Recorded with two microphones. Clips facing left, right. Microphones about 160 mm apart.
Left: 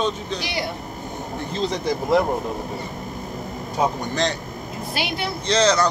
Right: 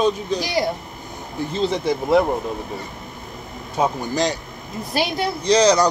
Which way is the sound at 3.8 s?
10° right (ahead or behind).